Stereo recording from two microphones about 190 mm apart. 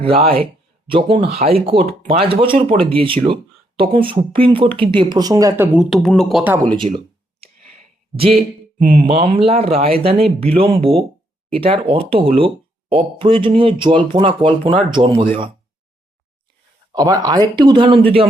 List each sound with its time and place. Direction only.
0.0 s speech: 30° right (ahead or behind)
5.7 s speech: centre (ahead or behind)
6.8 s speech: 30° right (ahead or behind)
7.4 s a sound: 35° right (ahead or behind)
9.0 s speech: 30° right (ahead or behind)
16.9 s speech: 20° right (ahead or behind)